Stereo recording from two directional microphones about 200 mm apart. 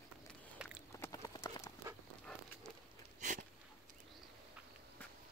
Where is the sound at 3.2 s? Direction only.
40° right (ahead or behind).